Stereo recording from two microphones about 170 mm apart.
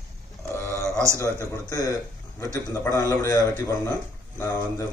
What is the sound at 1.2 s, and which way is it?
Speech, 15° left (ahead or behind).